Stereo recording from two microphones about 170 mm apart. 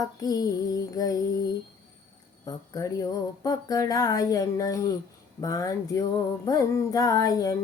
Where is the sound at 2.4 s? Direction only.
20° left (ahead or behind).